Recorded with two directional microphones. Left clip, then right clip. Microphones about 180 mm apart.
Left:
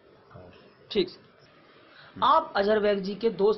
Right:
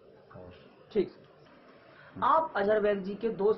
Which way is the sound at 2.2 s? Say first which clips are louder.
Left 4 dB; 60° left (ahead or behind).